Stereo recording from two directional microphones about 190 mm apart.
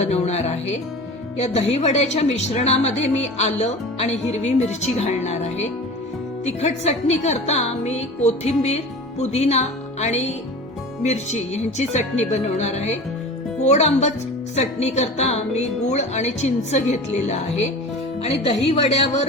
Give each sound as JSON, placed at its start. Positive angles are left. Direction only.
{"t": 0.0, "sound": "speech", "side_deg": 35}